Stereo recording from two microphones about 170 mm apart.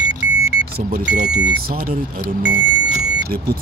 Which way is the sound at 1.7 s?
50° right (ahead or behind).